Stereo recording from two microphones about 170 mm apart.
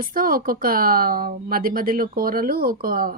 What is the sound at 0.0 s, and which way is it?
Speech, 55° right (ahead or behind).